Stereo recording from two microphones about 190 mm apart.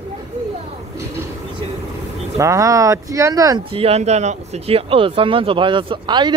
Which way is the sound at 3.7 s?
35° right (ahead or behind).